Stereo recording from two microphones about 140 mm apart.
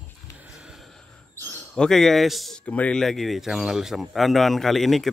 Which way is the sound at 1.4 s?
10° left (ahead or behind).